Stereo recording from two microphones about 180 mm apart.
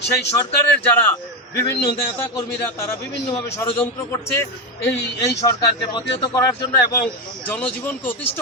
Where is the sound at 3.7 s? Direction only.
10° left (ahead or behind).